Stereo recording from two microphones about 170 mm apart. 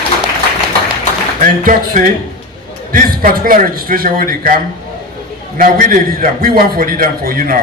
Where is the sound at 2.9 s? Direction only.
55° right (ahead or behind).